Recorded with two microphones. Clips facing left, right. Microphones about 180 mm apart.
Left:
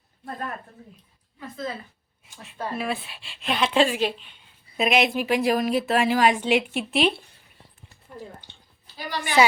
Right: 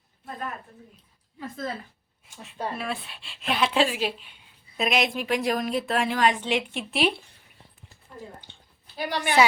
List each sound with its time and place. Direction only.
2.4 s a woman's voice: 5° left (ahead or behind)
9.0 s a woman's voice: 60° right (ahead or behind)